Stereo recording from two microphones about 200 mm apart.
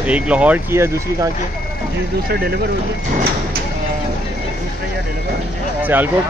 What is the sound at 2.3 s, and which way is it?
Speech, 50° right (ahead or behind).